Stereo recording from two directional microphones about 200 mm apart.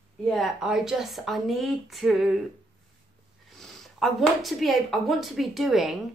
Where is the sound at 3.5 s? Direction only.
Centre (ahead or behind).